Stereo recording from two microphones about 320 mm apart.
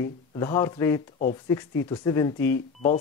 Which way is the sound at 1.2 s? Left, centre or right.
Left.